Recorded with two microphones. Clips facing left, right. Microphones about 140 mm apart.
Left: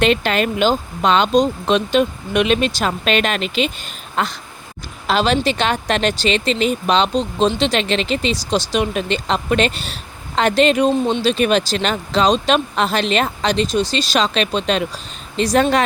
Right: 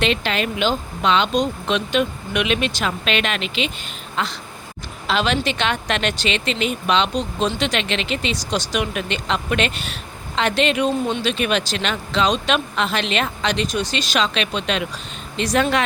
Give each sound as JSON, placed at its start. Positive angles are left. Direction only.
{"t": 0.0, "sound": "speech", "side_deg": 45}